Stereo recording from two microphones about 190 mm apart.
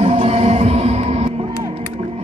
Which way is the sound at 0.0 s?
30° right (ahead or behind).